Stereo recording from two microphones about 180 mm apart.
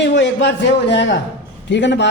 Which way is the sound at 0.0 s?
80° left.